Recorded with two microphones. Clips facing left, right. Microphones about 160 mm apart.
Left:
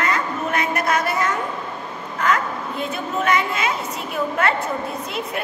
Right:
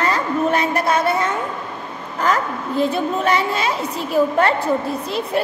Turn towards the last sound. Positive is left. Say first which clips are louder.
# right 6 dB
turn(degrees=-35)  # may be behind; listen again after turning